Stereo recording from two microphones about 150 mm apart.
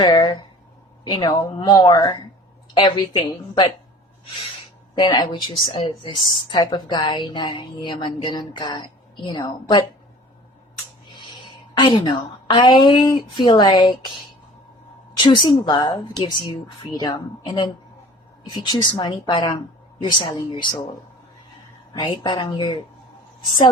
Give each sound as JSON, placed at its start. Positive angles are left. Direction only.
{"t": 0.0, "sound": "a sound", "side_deg": 30}
{"t": 1.0, "sound": "a woman's voice", "side_deg": 30}
{"t": 4.9, "sound": "a woman's voice", "side_deg": 30}
{"t": 11.7, "sound": "a woman's voice", "side_deg": 35}
{"t": 15.2, "sound": "a woman's voice", "side_deg": 30}
{"t": 21.9, "sound": "a woman's voice", "side_deg": 30}